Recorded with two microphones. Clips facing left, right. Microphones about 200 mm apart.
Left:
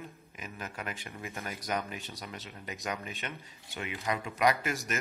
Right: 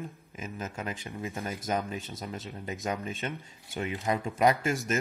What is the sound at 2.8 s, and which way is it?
Speech, 30° right (ahead or behind).